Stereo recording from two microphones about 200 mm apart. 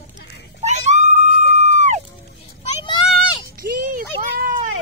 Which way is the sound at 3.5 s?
45° right (ahead or behind).